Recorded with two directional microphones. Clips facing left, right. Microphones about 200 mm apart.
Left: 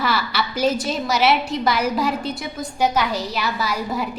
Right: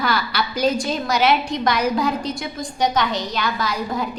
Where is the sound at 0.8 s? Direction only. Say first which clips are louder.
Even; 5° left (ahead or behind).